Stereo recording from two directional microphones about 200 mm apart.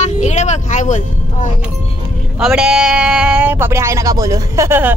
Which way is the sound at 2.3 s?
5° right (ahead or behind).